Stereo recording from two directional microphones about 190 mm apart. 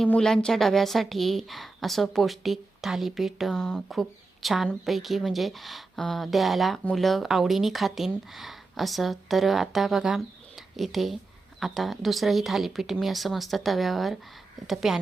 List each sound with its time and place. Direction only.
0.0 s a woman's voice: 5° left (ahead or behind)